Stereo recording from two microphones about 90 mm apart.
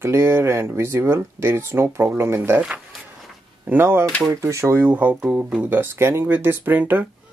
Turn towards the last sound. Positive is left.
turn(degrees=-20)  # may be behind; listen again after turning